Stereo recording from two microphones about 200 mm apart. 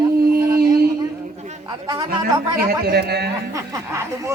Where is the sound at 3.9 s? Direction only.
15° right (ahead or behind).